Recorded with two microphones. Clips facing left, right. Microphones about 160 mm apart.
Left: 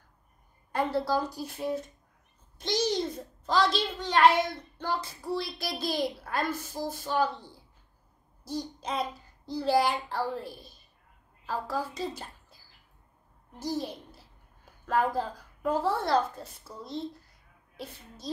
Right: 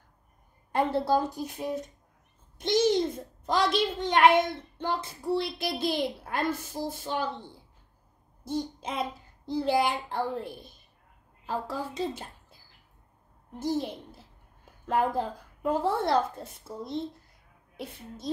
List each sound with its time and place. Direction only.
0.7 s a child's voice: 20° right (ahead or behind)
13.6 s a child's voice: 20° right (ahead or behind)